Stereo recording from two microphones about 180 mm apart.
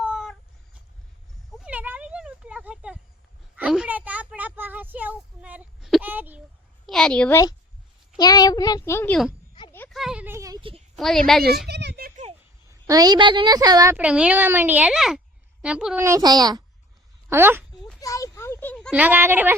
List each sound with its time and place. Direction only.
0.0 s cat: centre (ahead or behind)
1.5 s a sound: 5° right (ahead or behind)
6.8 s a woman's voice: 5° left (ahead or behind)
8.2 s speech: 20° left (ahead or behind)
9.9 s a sound: 5° right (ahead or behind); by 10.8 s 30° right (ahead or behind)
10.9 s a woman's voice: centre (ahead or behind)
11.7 s a sound: 70° right (ahead or behind)
12.9 s a woman's voice: 20° right (ahead or behind)
13.9 s a child's voice: 5° right (ahead or behind)
16.0 s a woman's voice: 20° right (ahead or behind)
17.2 s speech: 10° right (ahead or behind)
18.0 s a sound: 20° left (ahead or behind)
18.9 s a child's voice: 10° right (ahead or behind)